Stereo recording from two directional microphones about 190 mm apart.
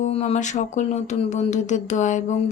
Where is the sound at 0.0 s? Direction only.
35° left (ahead or behind).